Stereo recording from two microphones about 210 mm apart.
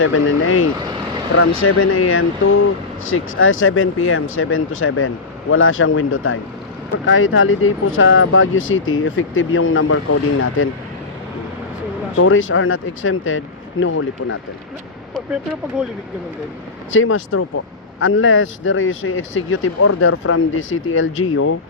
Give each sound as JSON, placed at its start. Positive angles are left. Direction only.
{"t": 0.0, "sound": "speech", "side_deg": 75}
{"t": 12.1, "sound": "speech", "side_deg": 70}
{"t": 15.8, "sound": "speech", "side_deg": -5}
{"t": 16.9, "sound": "speech", "side_deg": 70}